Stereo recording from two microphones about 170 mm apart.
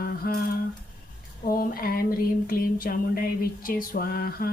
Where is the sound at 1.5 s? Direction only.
60° left (ahead or behind).